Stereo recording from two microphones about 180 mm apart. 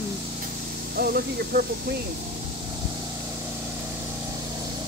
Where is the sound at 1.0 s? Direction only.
60° right (ahead or behind).